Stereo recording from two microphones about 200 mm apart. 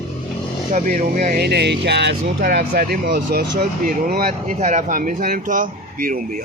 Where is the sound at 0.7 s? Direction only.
40° right (ahead or behind); by 2.3 s 60° right (ahead or behind).